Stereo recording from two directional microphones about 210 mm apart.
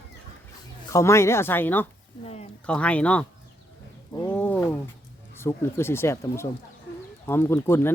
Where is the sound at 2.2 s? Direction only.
30° left (ahead or behind).